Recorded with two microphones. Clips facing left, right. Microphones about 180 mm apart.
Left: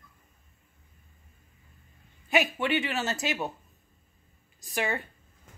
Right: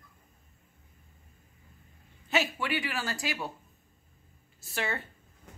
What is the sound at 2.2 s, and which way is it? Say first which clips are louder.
A woman's voice: left 4 dB; 15° left (ahead or behind).